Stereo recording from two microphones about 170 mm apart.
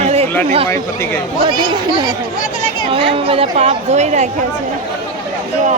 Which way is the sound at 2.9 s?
35° right (ahead or behind).